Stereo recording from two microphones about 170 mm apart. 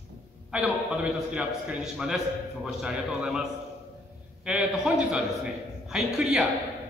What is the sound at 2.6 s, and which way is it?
Speech, 5° right (ahead or behind).